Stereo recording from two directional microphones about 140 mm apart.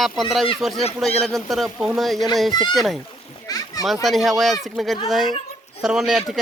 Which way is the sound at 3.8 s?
Centre (ahead or behind).